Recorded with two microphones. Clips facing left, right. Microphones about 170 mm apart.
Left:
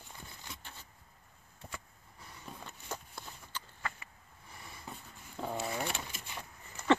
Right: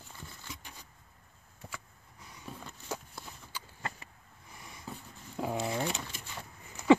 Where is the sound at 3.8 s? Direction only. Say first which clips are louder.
Right 2 dB; 40° right (ahead or behind).